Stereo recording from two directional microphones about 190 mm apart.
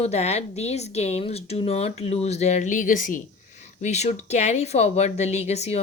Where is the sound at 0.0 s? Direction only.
35° left (ahead or behind).